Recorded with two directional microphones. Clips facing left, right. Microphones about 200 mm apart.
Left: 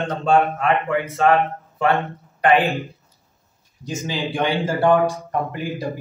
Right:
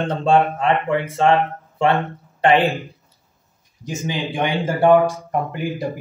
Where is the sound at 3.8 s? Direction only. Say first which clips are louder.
Right 1 dB; 15° right (ahead or behind).